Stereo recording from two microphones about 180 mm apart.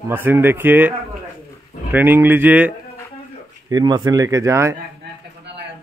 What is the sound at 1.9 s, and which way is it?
Speech, 10° right (ahead or behind).